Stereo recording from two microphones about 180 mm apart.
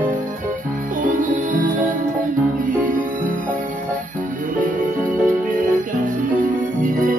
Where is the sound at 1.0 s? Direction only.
50° right (ahead or behind).